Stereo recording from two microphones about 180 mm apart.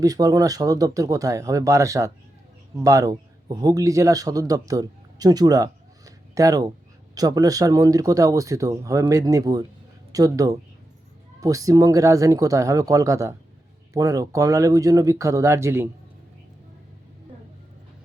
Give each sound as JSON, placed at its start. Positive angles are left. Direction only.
{"t": 0.0, "sound": "speech", "side_deg": -20}